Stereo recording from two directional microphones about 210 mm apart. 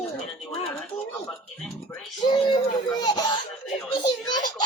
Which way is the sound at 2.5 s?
20° left (ahead or behind).